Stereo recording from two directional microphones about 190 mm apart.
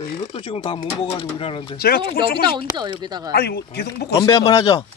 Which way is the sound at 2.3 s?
25° right (ahead or behind).